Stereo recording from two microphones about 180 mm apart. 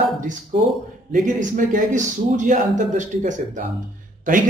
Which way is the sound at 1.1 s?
45° right (ahead or behind).